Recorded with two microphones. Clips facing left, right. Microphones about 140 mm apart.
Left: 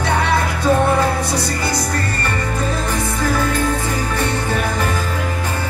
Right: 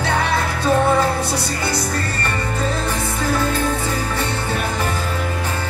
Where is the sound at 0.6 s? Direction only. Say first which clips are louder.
Even; 15° left (ahead or behind).